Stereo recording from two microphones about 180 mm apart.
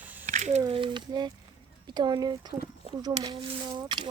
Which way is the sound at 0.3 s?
40° right (ahead or behind).